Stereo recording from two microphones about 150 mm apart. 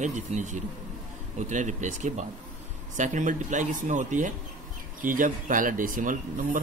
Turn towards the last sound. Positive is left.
turn(degrees=-60)  # may be behind; listen again after turning